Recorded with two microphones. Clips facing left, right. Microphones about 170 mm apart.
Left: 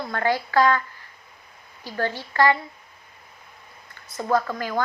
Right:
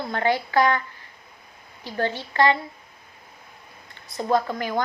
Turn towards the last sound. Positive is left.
turn(degrees=-20)  # may be behind; listen again after turning